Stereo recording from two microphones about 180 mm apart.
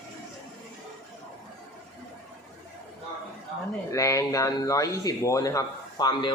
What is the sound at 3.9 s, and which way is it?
Speech, 15° left (ahead or behind).